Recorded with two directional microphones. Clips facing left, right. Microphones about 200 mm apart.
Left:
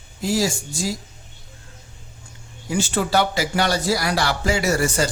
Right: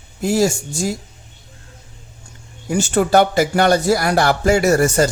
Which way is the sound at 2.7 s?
45° right (ahead or behind).